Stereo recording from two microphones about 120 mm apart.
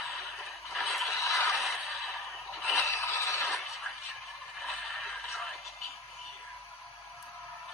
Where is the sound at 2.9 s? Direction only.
25° left (ahead or behind).